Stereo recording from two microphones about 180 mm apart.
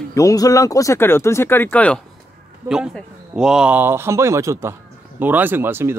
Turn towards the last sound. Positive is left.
turn(degrees=-10)  # may be behind; listen again after turning